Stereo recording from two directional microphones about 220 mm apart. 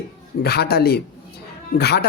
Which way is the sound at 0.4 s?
45° left (ahead or behind).